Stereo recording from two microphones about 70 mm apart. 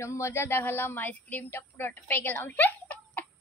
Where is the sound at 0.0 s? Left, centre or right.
Left.